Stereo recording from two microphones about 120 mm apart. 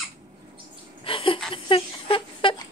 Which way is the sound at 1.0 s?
50° left (ahead or behind).